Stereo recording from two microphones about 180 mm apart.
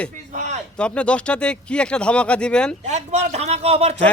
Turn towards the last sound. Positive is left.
turn(degrees=-35)  # may be behind; listen again after turning